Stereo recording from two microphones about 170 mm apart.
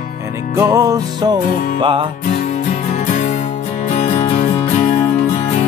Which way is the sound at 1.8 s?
30° right (ahead or behind).